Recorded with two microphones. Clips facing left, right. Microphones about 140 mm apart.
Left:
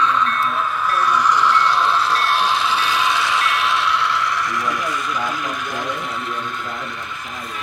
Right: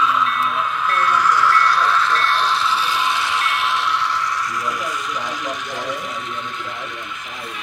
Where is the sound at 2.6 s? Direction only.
75° left (ahead or behind); by 5.9 s 50° left (ahead or behind).